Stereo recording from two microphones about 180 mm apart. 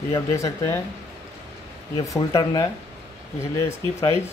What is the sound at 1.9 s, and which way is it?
Speech, 20° left (ahead or behind).